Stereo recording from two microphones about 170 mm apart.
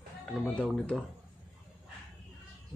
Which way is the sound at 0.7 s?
5° left (ahead or behind).